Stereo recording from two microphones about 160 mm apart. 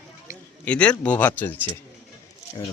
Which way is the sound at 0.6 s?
5° left (ahead or behind).